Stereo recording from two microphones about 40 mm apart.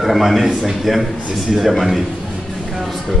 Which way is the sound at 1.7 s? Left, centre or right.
Centre.